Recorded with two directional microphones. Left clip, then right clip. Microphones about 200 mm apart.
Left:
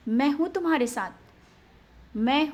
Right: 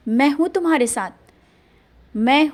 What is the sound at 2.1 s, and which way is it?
Speech, 35° right (ahead or behind).